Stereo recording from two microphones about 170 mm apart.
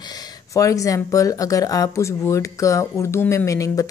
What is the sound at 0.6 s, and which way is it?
Speech, 20° left (ahead or behind).